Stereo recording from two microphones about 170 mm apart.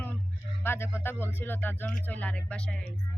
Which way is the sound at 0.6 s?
15° left (ahead or behind).